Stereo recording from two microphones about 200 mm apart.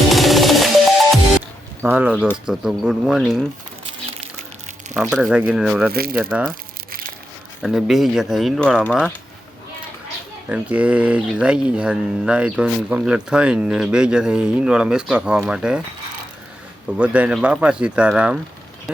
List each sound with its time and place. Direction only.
0.1 s music: centre (ahead or behind)
1.8 s speech: 5° right (ahead or behind)
4.9 s speech: 5° right (ahead or behind)
5.9 s speech: 50° right (ahead or behind)
6.2 s speech: 5° right (ahead or behind)
7.6 s speech: centre (ahead or behind)
10.5 s speech: 5° right (ahead or behind)
17.0 s speech: 5° right (ahead or behind)